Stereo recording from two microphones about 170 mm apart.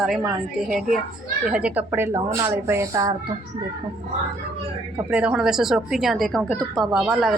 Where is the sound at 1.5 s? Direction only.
5° right (ahead or behind).